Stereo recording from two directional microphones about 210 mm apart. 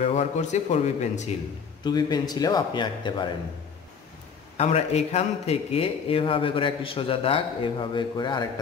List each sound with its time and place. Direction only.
0.0 s speech: 30° left (ahead or behind)
1.9 s a man's voice: 20° left (ahead or behind)
4.6 s a man's voice: 30° left (ahead or behind)